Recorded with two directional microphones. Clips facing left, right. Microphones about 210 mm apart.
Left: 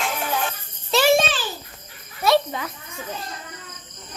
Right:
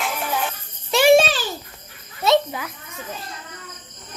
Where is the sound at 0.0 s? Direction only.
Centre (ahead or behind).